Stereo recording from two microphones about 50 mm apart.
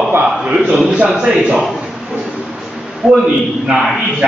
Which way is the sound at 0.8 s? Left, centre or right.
Right.